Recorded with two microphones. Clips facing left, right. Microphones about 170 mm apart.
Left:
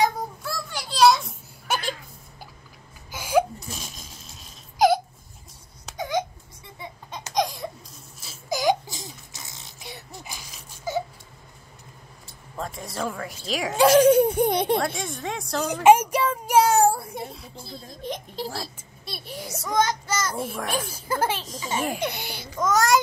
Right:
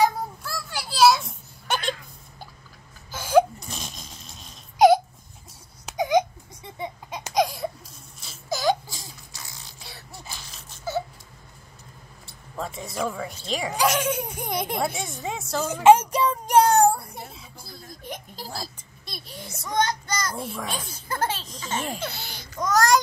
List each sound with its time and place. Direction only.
0.0 s children playing: 5° right (ahead or behind)
3.1 s laughter: 10° left (ahead or behind)
5.9 s a sound: 15° right (ahead or behind)
7.1 s a sound: 10° right (ahead or behind)
8.5 s baby cry: 15° left (ahead or behind)
12.5 s speech: centre (ahead or behind)
13.7 s a child's voice: 35° left (ahead or behind)
14.8 s a woman's voice: centre (ahead or behind)
15.8 s a sound: 10° left (ahead or behind)
18.4 s a woman's voice: centre (ahead or behind)
19.0 s a child's voice: 35° left (ahead or behind)
20.3 s a child's voice: 5° left (ahead or behind)
22.6 s a woman's voice: centre (ahead or behind)